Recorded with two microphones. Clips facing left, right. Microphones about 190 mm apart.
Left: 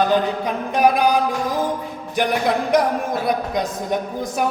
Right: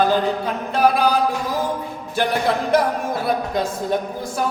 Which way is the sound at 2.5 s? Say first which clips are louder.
Left 1 dB; 15° left (ahead or behind).